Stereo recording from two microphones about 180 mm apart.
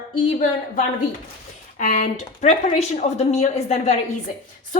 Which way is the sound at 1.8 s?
40° left (ahead or behind).